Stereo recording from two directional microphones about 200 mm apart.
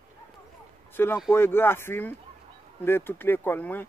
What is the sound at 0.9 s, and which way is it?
Speech, 10° left (ahead or behind).